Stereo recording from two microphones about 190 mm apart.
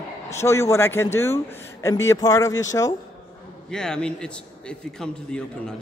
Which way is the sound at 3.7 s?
5° left (ahead or behind).